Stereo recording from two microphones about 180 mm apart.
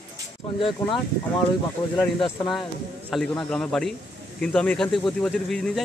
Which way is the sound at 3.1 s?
5° left (ahead or behind).